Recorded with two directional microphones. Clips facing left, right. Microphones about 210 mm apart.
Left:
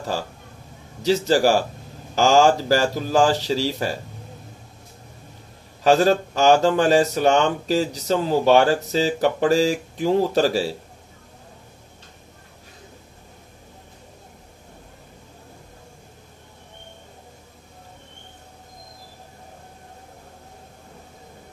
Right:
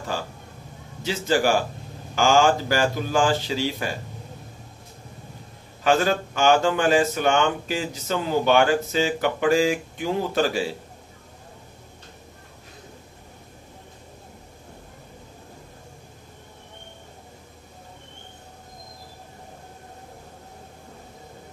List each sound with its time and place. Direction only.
1.0 s speech: 40° left (ahead or behind)
5.9 s speech: 35° left (ahead or behind)